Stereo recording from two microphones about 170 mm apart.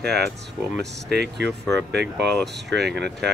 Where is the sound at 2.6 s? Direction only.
85° right.